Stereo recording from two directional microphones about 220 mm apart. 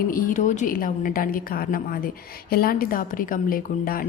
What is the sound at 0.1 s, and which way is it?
A woman's voice, 40° left (ahead or behind).